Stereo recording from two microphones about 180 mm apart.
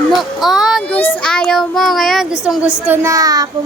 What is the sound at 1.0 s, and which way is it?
Child singing, 10° left (ahead or behind).